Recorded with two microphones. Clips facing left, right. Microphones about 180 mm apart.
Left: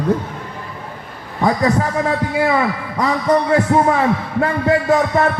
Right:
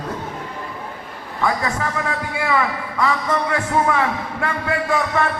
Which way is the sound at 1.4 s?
35° left (ahead or behind).